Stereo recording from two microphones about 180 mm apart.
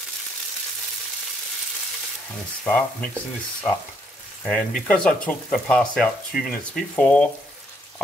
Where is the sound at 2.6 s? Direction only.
10° left (ahead or behind).